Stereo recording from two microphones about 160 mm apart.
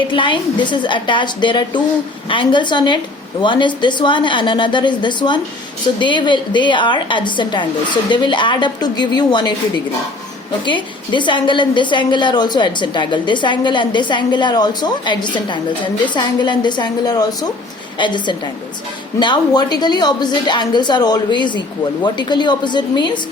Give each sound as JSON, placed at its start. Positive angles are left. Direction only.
{"t": 0.1, "sound": "a woman's voice", "side_deg": 30}